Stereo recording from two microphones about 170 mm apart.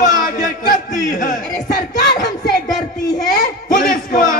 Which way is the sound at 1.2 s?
65° left (ahead or behind).